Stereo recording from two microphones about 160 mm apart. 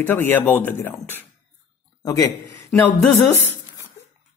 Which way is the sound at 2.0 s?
20° left (ahead or behind).